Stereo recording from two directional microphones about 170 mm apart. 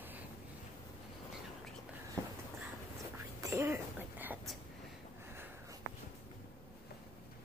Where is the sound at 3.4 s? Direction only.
15° right (ahead or behind).